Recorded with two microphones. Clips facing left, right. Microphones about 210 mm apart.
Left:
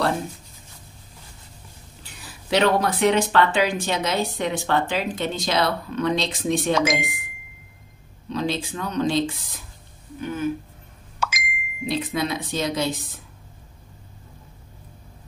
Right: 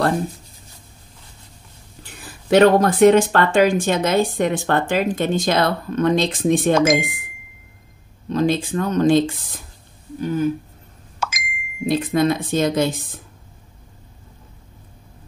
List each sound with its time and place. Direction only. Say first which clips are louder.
2.2 s speech: right 7 dB; 50° right (ahead or behind)
8.3 s speech: right 7 dB; 50° right (ahead or behind)
10.2 s speech: right 5 dB; 35° right (ahead or behind); by 13.2 s 50° right (ahead or behind)